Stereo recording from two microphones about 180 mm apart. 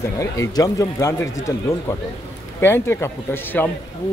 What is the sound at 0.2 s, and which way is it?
Speech, 20° left (ahead or behind).